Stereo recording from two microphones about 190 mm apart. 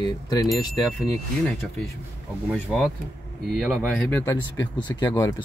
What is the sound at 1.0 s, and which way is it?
Speech, centre (ahead or behind).